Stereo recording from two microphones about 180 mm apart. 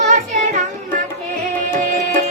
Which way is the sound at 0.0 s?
45° right (ahead or behind).